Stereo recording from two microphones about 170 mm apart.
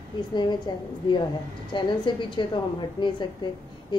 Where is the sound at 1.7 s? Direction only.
25° left (ahead or behind).